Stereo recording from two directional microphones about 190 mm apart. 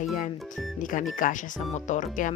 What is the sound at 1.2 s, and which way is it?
Speech, 45° left (ahead or behind).